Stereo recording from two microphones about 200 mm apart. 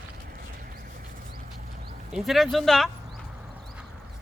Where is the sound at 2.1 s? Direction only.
Centre (ahead or behind).